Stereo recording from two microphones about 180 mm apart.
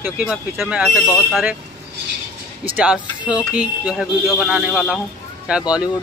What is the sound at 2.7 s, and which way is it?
Speech, 5° right (ahead or behind).